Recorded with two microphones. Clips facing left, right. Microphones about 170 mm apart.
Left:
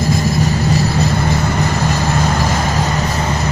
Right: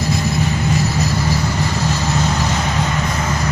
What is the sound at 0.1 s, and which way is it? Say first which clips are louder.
Train: left 2 dB; 40° left (ahead or behind).